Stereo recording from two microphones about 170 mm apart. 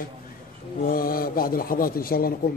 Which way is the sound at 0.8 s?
60° left (ahead or behind).